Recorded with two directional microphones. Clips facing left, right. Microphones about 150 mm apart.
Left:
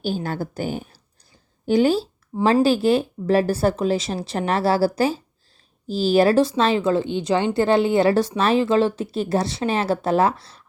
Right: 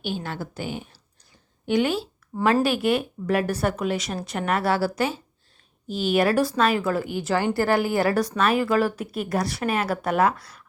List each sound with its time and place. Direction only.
0.0 s speech: 40° left (ahead or behind)